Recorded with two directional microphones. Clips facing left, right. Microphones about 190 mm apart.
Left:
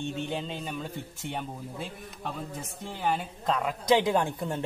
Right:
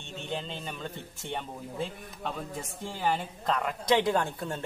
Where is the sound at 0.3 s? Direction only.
10° left (ahead or behind).